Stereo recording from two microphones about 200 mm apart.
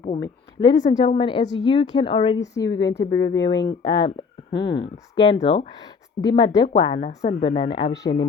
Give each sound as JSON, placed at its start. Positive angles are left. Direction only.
{"t": 0.2, "sound": "speech", "side_deg": 20}